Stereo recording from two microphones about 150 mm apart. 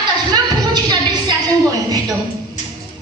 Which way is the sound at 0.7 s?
30° right (ahead or behind).